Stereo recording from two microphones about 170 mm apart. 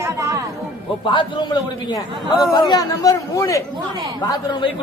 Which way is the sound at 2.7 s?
20° left (ahead or behind).